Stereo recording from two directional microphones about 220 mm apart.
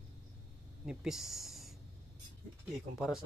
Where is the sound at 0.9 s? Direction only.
Centre (ahead or behind).